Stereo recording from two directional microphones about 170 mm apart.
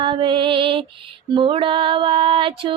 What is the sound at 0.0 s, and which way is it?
Music, 30° right (ahead or behind).